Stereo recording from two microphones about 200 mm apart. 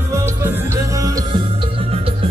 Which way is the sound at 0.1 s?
15° right (ahead or behind).